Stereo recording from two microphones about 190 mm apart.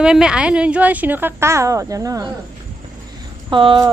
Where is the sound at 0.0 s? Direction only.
5° right (ahead or behind).